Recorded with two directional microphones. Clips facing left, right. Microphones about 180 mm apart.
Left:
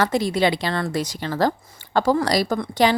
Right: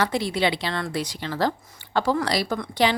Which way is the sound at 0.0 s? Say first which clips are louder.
Left 4 dB; 45° left (ahead or behind).